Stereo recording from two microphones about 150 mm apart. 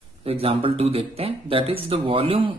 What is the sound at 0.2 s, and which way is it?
Speech, 40° right (ahead or behind).